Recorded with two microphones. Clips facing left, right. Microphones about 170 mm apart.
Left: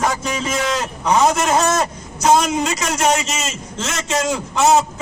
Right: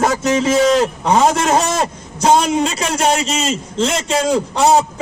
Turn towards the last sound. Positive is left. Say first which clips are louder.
# right 2 dB
turn(degrees=-35)  # may be behind; listen again after turning